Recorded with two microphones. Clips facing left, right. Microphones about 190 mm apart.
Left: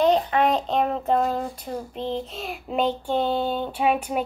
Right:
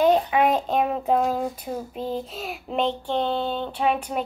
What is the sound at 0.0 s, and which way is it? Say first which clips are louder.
A child's voice: right 1 dB; 5° right (ahead or behind).